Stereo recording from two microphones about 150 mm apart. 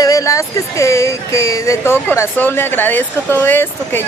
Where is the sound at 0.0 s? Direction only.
20° left (ahead or behind).